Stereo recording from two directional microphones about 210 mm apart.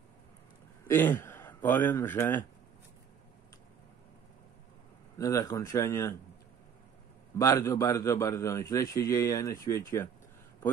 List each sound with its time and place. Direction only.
0.8 s speech: 10° left (ahead or behind)
5.1 s a man's voice: 15° left (ahead or behind)
7.3 s a man's voice: 15° left (ahead or behind)